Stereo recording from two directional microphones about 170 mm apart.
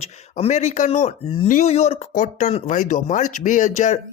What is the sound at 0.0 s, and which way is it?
Speech, 35° left (ahead or behind).